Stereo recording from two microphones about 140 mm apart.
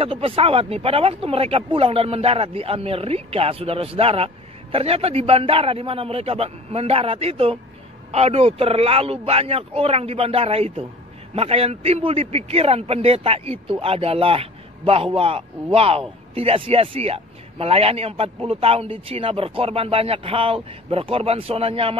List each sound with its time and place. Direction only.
0.0 s a man's voice: 40° right (ahead or behind)